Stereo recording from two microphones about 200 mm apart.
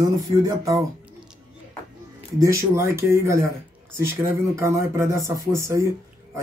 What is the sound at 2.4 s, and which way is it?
Speech, 15° right (ahead or behind).